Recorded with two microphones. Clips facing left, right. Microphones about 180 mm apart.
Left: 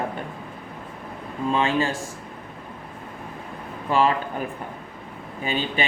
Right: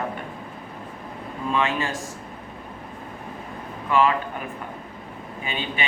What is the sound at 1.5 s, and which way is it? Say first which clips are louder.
Speech: left 2 dB; 30° left (ahead or behind).